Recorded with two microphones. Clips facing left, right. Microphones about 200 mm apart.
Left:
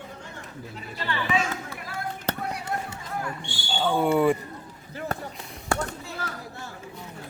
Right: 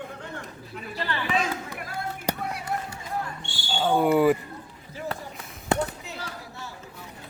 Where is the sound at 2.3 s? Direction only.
10° right (ahead or behind).